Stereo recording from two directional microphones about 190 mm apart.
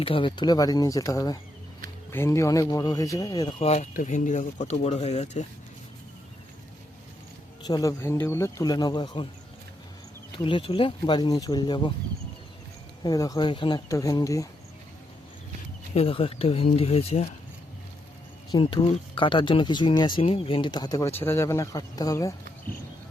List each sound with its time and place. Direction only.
0.0 s speech: 25° left (ahead or behind)
3.6 s speech: 35° left (ahead or behind)
7.6 s speech: 20° left (ahead or behind)
10.3 s speech: 25° left (ahead or behind)
13.0 s speech: 20° left (ahead or behind)
16.0 s speech: 30° left (ahead or behind)
18.5 s speech: 25° left (ahead or behind)